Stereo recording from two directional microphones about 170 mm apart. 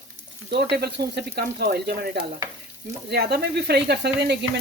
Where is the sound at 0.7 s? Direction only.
75° right (ahead or behind).